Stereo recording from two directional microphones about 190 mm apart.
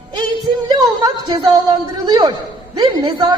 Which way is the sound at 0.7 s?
20° right (ahead or behind).